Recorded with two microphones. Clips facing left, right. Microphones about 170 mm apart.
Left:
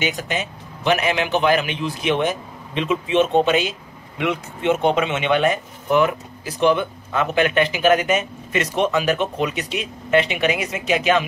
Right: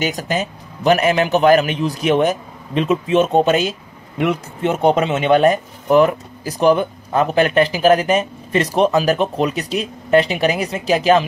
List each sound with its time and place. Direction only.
0.0 s speech: 40° right (ahead or behind)